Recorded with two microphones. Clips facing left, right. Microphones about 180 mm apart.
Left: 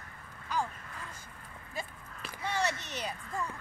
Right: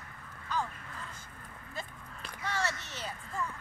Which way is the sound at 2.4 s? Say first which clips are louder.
Left 2 dB; 20° left (ahead or behind).